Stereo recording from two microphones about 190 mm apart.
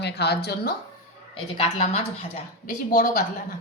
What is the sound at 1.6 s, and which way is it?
A woman's voice, 35° left (ahead or behind).